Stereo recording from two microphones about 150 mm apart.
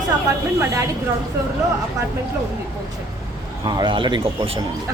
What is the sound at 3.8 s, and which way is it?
Speech, 30° right (ahead or behind).